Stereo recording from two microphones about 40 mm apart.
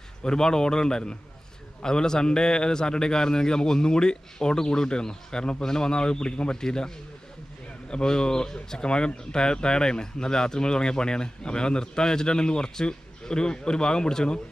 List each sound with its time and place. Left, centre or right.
0.2 s speech: centre
7.9 s speech: centre